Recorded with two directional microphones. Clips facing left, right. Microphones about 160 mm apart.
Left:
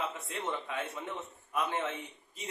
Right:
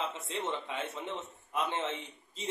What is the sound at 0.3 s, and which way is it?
A man's voice, 25° right (ahead or behind).